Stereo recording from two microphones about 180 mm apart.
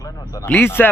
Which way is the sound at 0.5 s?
10° left (ahead or behind).